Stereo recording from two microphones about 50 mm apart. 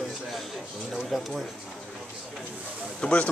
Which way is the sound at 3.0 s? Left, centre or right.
Left.